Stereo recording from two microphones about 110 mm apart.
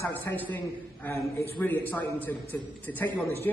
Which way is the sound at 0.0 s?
20° left (ahead or behind).